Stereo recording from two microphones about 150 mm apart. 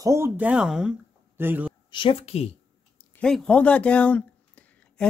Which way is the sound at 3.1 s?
5° left (ahead or behind).